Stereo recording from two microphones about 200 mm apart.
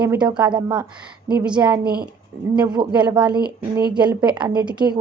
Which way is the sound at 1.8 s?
50° right (ahead or behind).